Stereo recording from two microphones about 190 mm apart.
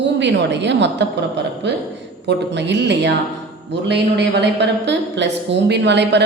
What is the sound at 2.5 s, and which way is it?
A woman's voice, 65° right (ahead or behind).